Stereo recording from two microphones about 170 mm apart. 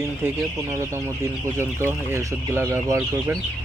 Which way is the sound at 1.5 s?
15° right (ahead or behind).